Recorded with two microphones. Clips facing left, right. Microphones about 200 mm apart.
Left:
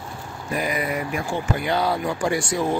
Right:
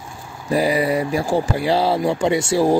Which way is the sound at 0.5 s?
30° right (ahead or behind).